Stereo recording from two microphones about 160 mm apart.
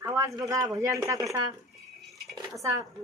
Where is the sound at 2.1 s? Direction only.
Centre (ahead or behind).